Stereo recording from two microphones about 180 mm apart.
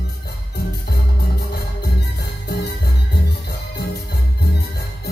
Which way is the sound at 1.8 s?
60° left (ahead or behind).